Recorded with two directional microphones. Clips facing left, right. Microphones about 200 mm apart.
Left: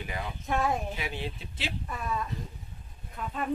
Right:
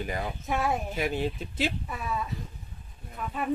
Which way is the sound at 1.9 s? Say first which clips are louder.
Right 1 dB; 5° right (ahead or behind).